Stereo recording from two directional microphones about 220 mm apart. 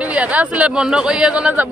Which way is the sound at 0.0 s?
5° right (ahead or behind).